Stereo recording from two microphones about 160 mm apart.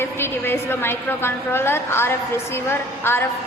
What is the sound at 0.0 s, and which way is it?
A woman's voice, 15° left (ahead or behind).